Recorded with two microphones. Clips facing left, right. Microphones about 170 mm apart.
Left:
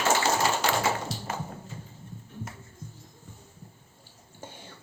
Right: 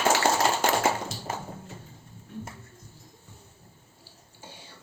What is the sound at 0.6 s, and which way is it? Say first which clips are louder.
Tap: right 2 dB; 50° right (ahead or behind).